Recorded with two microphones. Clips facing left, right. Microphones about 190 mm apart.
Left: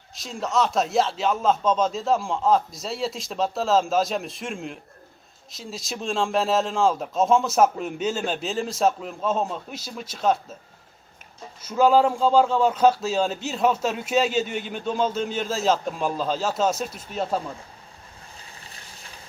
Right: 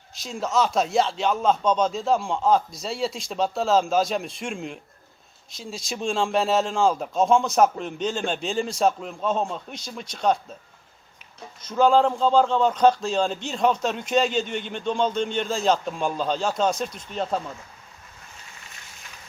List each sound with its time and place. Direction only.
0.1 s speech: centre (ahead or behind)
11.6 s speech: 5° left (ahead or behind)
18.5 s boat: 35° left (ahead or behind)